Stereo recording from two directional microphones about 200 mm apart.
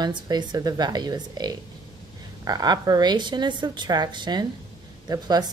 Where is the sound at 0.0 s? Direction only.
20° right (ahead or behind).